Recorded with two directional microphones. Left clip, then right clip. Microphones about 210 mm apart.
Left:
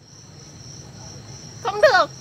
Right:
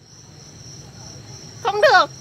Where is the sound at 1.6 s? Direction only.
45° right (ahead or behind).